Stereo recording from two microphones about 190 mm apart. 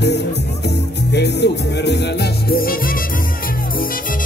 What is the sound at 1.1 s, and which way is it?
Music, 60° left (ahead or behind).